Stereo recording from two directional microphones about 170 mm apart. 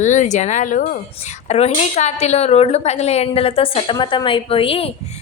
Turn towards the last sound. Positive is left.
turn(degrees=35)  # may be behind; listen again after turning